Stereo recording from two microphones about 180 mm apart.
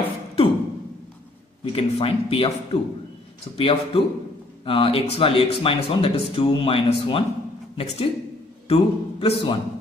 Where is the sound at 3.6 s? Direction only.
30° left (ahead or behind).